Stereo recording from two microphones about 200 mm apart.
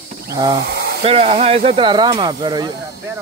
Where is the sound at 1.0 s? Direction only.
30° right (ahead or behind).